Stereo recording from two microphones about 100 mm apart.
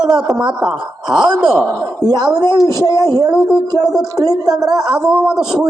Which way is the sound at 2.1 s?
40° right (ahead or behind).